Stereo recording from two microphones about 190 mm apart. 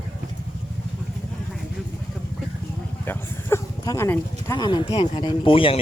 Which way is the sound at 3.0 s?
15° left (ahead or behind).